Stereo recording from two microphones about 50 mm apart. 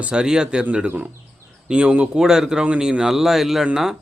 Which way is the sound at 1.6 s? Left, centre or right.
Centre.